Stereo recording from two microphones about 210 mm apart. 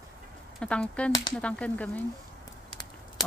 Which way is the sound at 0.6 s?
5° left (ahead or behind).